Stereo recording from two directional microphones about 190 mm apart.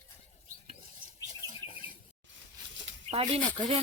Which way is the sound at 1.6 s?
25° left (ahead or behind).